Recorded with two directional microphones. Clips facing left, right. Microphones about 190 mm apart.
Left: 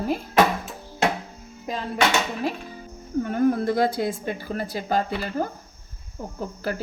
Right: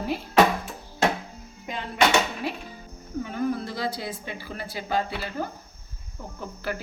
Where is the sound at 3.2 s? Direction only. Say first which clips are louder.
Left 7 dB; 50° left (ahead or behind).